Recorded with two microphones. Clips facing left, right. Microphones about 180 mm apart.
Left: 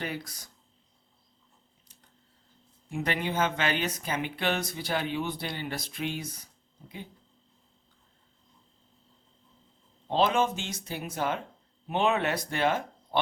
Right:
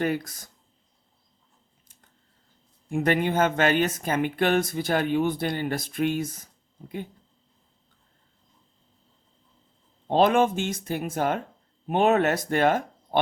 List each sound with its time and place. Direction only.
0.0 s speech: 50° right (ahead or behind)
2.9 s speech: 50° right (ahead or behind)
10.1 s speech: 55° right (ahead or behind)